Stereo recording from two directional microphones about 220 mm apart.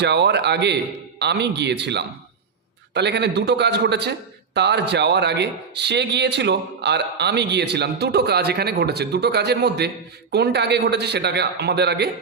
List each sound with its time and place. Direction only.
0.0 s speech: 50° right (ahead or behind)